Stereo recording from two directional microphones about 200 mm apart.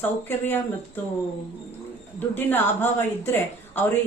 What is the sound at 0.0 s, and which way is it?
Speech, 10° left (ahead or behind).